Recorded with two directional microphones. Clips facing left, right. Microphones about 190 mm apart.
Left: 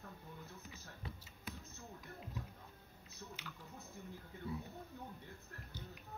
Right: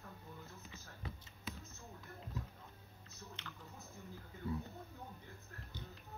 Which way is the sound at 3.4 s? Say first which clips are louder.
Even; 10° left (ahead or behind).